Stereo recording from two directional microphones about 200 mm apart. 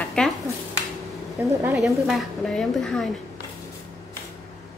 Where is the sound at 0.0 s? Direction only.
5° left (ahead or behind).